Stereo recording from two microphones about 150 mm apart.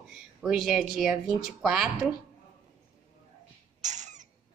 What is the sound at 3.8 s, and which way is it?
Rodents, 50° right (ahead or behind).